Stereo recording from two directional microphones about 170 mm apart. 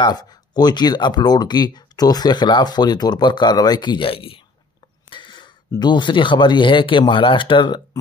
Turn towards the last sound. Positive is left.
turn(degrees=25)  # may be behind; listen again after turning